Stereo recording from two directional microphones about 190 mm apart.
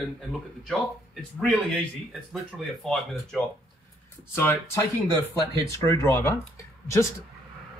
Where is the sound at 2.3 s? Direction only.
Centre (ahead or behind).